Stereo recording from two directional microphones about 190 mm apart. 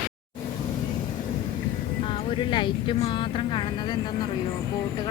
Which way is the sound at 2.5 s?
25° left (ahead or behind).